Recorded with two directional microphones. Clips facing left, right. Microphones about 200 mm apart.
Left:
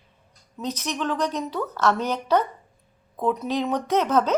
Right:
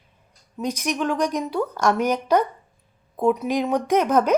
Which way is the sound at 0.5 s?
10° right (ahead or behind).